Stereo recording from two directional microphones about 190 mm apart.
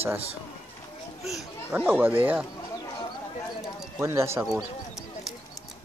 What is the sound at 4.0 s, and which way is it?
Speech, 15° right (ahead or behind).